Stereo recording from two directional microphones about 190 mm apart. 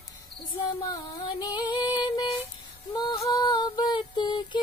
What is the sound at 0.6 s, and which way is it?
Music, 20° left (ahead or behind).